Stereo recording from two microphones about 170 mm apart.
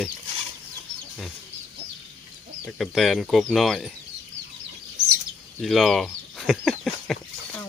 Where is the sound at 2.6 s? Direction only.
Centre (ahead or behind).